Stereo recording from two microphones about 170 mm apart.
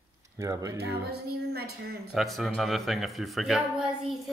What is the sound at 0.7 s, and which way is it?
Speech, 70° right (ahead or behind).